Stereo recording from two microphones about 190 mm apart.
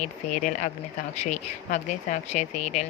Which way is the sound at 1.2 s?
35° left (ahead or behind).